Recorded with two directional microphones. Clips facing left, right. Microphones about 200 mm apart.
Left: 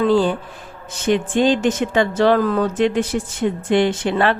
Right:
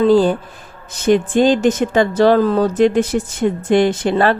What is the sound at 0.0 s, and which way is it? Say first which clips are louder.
Speech: right 4 dB; 40° right (ahead or behind).